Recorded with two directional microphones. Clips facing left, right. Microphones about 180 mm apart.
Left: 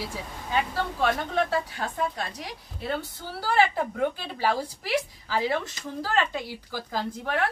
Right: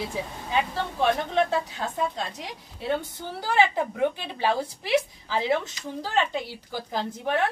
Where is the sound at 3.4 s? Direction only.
20° right (ahead or behind).